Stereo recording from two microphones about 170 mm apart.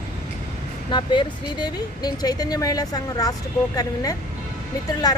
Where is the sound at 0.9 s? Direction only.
30° left (ahead or behind).